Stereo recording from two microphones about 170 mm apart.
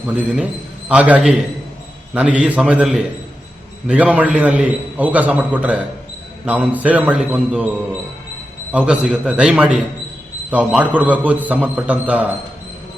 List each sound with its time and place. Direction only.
0.9 s a man's voice: 10° right (ahead or behind)
8.7 s a man's voice: 5° right (ahead or behind)